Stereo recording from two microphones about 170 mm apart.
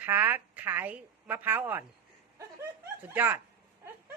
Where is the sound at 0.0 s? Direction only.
10° right (ahead or behind).